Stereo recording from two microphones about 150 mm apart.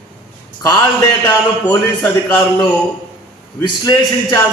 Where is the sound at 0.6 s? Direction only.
25° left (ahead or behind).